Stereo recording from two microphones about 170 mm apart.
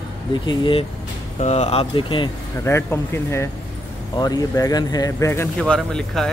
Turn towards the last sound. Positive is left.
turn(degrees=0)  # may be behind; listen again after turning